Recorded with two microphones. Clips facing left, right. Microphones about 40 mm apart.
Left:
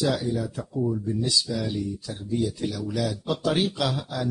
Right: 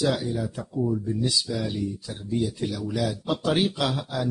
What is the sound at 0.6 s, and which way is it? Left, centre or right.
Speech, centre.